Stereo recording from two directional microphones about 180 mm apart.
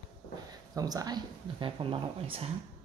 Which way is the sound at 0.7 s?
20° right (ahead or behind).